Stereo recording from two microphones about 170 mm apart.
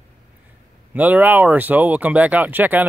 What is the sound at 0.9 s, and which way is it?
Speech, 10° right (ahead or behind).